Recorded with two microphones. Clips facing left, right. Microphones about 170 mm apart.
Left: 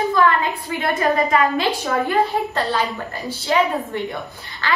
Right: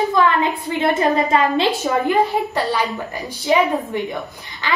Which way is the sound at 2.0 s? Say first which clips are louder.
Right 1 dB; 15° right (ahead or behind).